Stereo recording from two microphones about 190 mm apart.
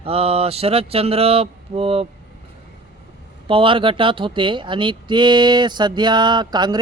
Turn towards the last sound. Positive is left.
turn(degrees=-20)  # may be behind; listen again after turning